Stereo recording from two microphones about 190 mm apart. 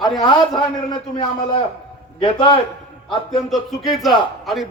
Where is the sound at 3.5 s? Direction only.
Centre (ahead or behind).